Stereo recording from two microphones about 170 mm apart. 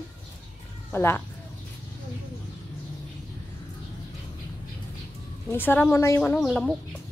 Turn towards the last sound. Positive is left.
turn(degrees=0)  # may be behind; listen again after turning